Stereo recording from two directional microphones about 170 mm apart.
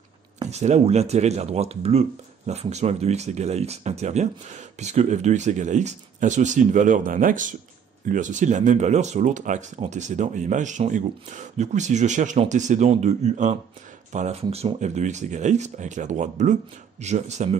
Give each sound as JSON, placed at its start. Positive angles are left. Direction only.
{"t": 0.5, "sound": "speech", "side_deg": -40}